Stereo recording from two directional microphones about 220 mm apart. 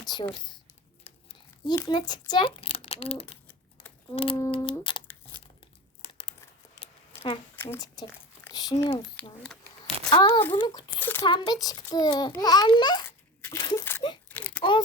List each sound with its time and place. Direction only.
0.1 s a child's voice: 20° left (ahead or behind)
1.3 s a child's voice: 15° left (ahead or behind)
7.5 s speech: 10° left (ahead or behind)
10.1 s a child's voice: 20° left (ahead or behind)
11.0 s a child's voice: 10° left (ahead or behind)
14.3 s a sound: 5° left (ahead or behind)